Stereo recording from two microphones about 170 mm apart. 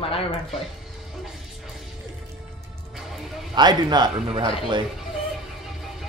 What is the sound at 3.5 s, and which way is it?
A man's voice, 25° right (ahead or behind).